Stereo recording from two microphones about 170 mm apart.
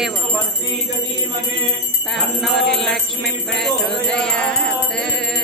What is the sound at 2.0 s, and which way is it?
Jingle bell, centre (ahead or behind).